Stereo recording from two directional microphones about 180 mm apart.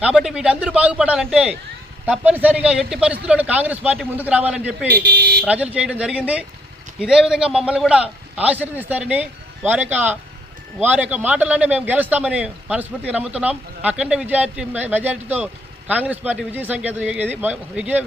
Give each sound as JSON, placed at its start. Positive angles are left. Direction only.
{"t": 0.0, "sound": "a man's voice", "side_deg": -5}
{"t": 4.9, "sound": "speech", "side_deg": -55}
{"t": 5.5, "sound": "a man's voice", "side_deg": -5}